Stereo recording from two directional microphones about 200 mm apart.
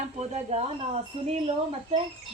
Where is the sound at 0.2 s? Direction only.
35° right (ahead or behind).